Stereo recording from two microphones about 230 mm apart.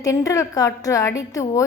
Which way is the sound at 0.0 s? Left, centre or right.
Centre.